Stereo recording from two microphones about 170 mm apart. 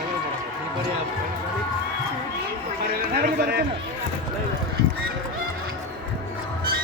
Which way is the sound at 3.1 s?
65° right (ahead or behind).